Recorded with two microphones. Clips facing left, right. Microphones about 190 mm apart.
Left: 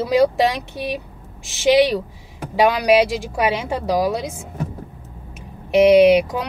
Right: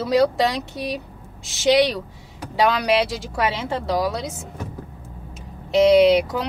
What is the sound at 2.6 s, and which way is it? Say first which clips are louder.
Speech: left 4 dB; 15° left (ahead or behind).